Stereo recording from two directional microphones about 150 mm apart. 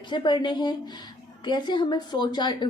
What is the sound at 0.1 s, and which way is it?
A woman's voice, 30° left (ahead or behind).